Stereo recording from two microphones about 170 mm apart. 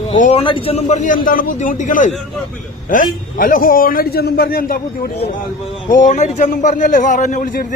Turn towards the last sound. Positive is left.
turn(degrees=50)  # may be behind; listen again after turning